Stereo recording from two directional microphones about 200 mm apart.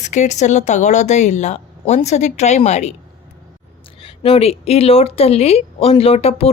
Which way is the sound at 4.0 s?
30° left (ahead or behind).